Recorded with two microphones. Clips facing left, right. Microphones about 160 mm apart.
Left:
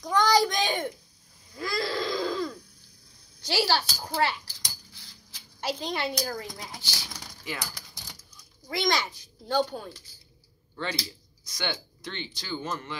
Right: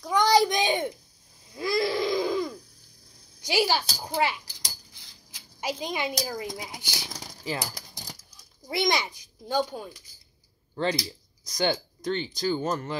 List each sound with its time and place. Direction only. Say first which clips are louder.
0.2 s a sound: right 2 dB; 20° right (ahead or behind)
1.5 s wheeze: right 4 dB; 20° right (ahead or behind)
3.4 s speech: right 1 dB; 15° right (ahead or behind)
7.1 s speech: right 6 dB; 30° right (ahead or behind)
7.9 s a sound: right 4 dB; 35° right (ahead or behind)
8.6 s a child's voice: right 1 dB; 20° right (ahead or behind)
9.5 s speech: left 1 dB; 10° right (ahead or behind)
11.4 s speech: right 7 dB; 40° right (ahead or behind)